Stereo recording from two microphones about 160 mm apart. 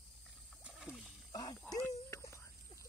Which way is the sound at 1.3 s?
25° left (ahead or behind).